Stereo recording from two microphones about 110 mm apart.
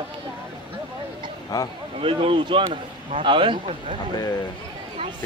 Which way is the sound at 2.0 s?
55° right (ahead or behind).